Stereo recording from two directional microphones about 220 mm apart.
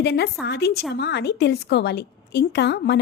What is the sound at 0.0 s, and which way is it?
A woman's voice, 50° left (ahead or behind).